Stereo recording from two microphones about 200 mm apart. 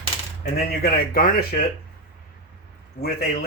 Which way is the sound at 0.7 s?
50° left (ahead or behind).